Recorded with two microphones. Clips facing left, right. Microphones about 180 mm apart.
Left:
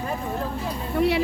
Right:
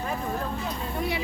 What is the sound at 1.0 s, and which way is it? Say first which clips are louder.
Speech: left 10 dB; 70° left (ahead or behind).